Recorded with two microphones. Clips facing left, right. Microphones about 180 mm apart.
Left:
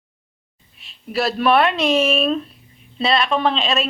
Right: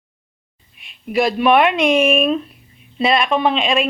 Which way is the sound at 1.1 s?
15° right (ahead or behind).